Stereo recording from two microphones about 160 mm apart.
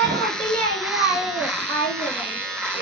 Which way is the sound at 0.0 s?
Centre (ahead or behind).